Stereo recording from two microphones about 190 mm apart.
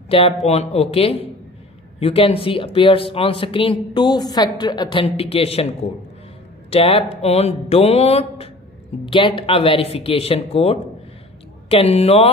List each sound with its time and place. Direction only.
0.5 s speech: 35° left (ahead or behind)
6.7 s speech: 30° left (ahead or behind)